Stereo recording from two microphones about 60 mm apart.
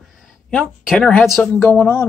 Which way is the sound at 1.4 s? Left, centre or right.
Left.